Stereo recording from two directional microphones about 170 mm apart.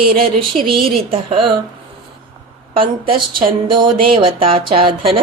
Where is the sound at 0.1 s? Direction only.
30° right (ahead or behind).